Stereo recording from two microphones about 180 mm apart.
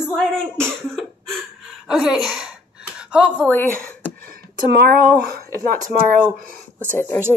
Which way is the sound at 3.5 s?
10° left (ahead or behind).